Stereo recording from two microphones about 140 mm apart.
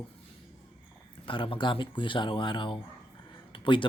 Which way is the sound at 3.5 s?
35° left (ahead or behind).